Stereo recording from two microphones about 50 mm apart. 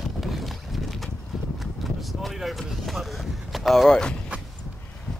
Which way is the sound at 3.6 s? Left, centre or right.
Centre.